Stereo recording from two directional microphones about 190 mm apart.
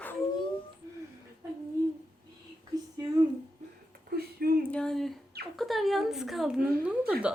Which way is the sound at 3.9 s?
55° right (ahead or behind).